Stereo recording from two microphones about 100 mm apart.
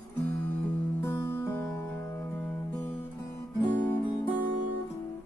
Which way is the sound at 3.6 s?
20° left (ahead or behind).